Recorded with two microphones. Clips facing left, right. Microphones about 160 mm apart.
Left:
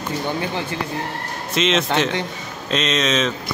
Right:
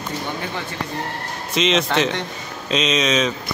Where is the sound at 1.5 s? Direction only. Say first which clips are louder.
Even; centre (ahead or behind).